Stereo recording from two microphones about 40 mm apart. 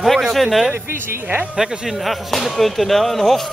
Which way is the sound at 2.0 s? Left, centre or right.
Centre.